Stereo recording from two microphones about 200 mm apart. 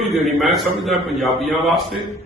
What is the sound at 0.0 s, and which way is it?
A man's voice, centre (ahead or behind).